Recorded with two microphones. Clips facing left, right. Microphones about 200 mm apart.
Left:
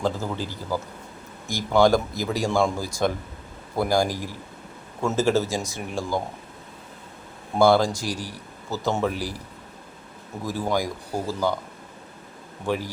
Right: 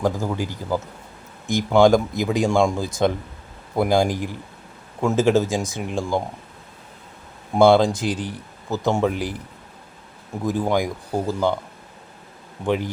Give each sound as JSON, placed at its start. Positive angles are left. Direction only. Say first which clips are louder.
{"t": 0.0, "sound": "speech", "louder": "right 4 dB", "side_deg": -15}
{"t": 7.6, "sound": "speech", "louder": "right 4 dB", "side_deg": -20}
{"t": 10.4, "sound": "speech", "louder": "right 4 dB", "side_deg": -20}
{"t": 12.6, "sound": "speech", "louder": "right 4 dB", "side_deg": -20}